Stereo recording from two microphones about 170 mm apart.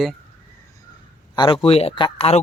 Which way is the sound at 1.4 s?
30° left (ahead or behind).